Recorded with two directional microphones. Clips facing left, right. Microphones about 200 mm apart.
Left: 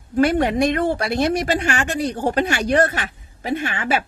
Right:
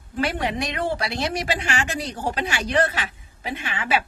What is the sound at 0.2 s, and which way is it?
A woman's voice, 45° left (ahead or behind).